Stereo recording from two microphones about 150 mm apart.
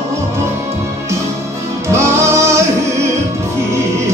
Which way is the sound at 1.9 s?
20° right (ahead or behind).